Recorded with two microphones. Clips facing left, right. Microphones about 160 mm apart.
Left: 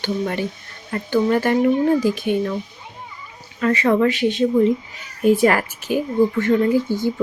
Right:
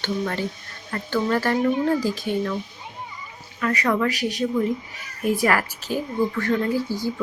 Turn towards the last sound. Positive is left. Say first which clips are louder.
# left 5 dB
turn(degrees=20)  # may be behind; listen again after turning